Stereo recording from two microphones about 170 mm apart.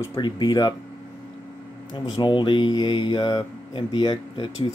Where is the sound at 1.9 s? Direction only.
25° left (ahead or behind).